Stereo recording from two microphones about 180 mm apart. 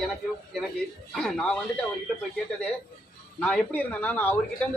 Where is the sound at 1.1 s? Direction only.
5° left (ahead or behind).